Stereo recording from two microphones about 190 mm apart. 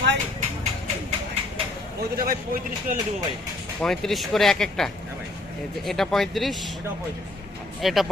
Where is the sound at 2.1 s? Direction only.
50° right (ahead or behind).